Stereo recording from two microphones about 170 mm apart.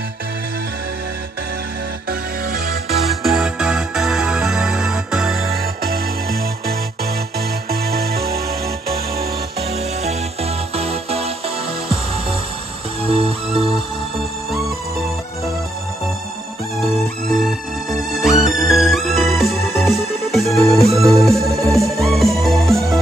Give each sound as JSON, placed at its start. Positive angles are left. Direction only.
{"t": 3.1, "sound": "music", "side_deg": 0}
{"t": 7.3, "sound": "music", "side_deg": -65}
{"t": 9.6, "sound": "music", "side_deg": -35}
{"t": 13.0, "sound": "music", "side_deg": -35}
{"t": 17.4, "sound": "music", "side_deg": 0}